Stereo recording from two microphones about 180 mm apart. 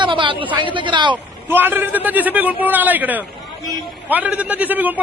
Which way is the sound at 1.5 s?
10° right (ahead or behind).